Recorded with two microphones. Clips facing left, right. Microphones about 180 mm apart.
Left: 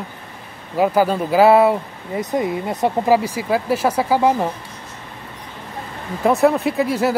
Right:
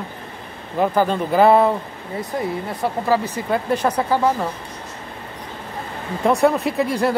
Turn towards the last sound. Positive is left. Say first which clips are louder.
# left 1 dB
turn(degrees=5)  # may be behind; listen again after turning